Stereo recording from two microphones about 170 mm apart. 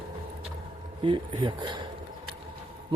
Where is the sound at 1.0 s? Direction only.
30° right (ahead or behind).